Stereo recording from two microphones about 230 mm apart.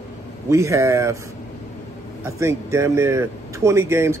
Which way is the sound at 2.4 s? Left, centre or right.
Centre.